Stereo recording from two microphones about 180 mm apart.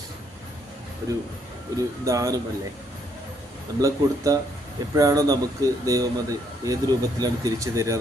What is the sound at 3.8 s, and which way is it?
A man's voice, 20° right (ahead or behind).